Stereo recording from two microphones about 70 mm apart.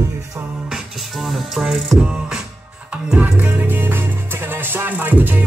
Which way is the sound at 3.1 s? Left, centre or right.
Right.